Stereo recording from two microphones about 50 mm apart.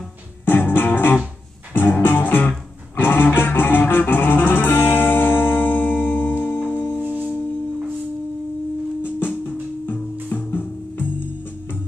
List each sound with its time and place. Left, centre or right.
0.5 s music: left
10.3 s music: left